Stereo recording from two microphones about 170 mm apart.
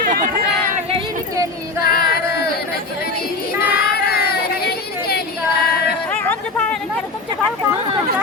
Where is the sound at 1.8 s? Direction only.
65° left (ahead or behind).